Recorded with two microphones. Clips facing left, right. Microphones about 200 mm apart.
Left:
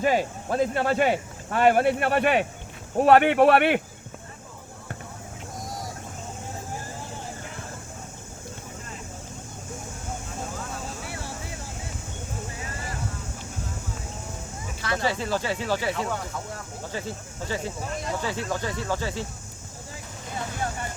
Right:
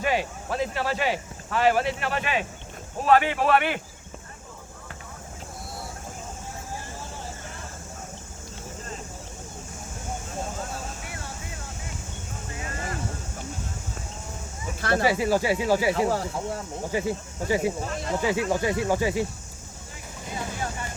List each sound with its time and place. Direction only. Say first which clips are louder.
0.0 s speech: left 3 dB; 45° left (ahead or behind); by 3.8 s 60° left (ahead or behind)
5.6 s vehicle: left 3 dB; 40° left (ahead or behind)
14.8 s a sound: right 5 dB; 50° right (ahead or behind)
15.0 s speech: right 4 dB; 10° right (ahead or behind)
16.0 s speech: right 5 dB; 35° right (ahead or behind)
16.9 s speech: right 7 dB; 15° right (ahead or behind)